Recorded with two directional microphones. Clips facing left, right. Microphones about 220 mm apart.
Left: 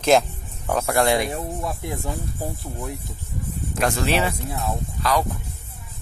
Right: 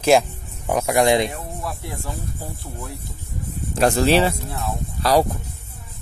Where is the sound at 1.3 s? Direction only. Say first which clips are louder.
Left 3 dB; 20° left (ahead or behind).